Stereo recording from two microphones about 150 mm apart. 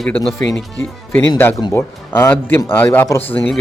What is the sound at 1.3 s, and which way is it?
A man's voice, 15° left (ahead or behind).